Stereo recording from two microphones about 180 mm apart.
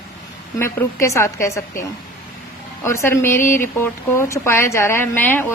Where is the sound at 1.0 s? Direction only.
15° left (ahead or behind).